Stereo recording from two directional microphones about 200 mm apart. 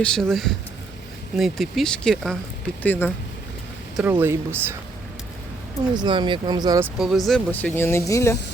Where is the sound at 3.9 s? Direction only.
10° right (ahead or behind).